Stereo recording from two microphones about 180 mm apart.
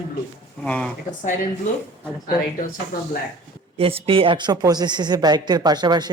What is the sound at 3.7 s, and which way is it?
Speech, 35° right (ahead or behind).